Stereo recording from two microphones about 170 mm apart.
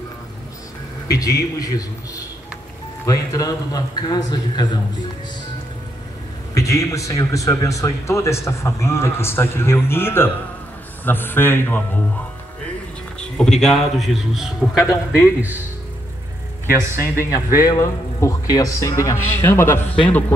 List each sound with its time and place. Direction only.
1.0 s a man's voice: 20° left (ahead or behind)
6.5 s a man's voice: 20° left (ahead or behind)
13.2 s a man's voice: 5° left (ahead or behind)
16.6 s speech: 15° right (ahead or behind)
17.6 s speech: 20° left (ahead or behind)